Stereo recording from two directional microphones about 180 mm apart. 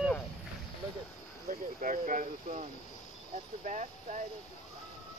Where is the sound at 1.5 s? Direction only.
45° right (ahead or behind).